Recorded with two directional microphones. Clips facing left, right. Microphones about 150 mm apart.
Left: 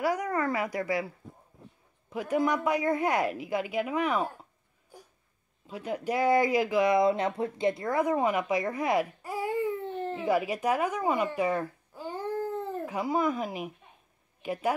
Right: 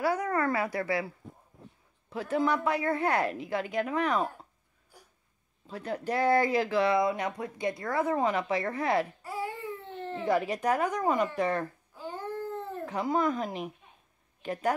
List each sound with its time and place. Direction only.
0.0 s a woman's voice: 15° left (ahead or behind)
5.7 s a woman's voice: 10° left (ahead or behind)
7.0 s a woman's voice: 25° left (ahead or behind); by 14.8 s 10° left (ahead or behind)